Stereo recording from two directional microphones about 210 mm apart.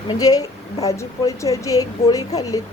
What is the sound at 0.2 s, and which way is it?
A woman's voice, 15° left (ahead or behind).